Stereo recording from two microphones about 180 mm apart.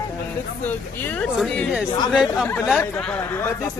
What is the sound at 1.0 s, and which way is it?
Speech, 10° left (ahead or behind).